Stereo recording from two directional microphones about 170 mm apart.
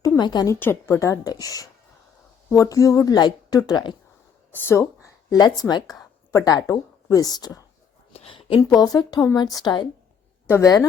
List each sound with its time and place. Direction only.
0.2 s a woman's voice: 25° left (ahead or behind)
8.1 s a woman's voice: 35° left (ahead or behind)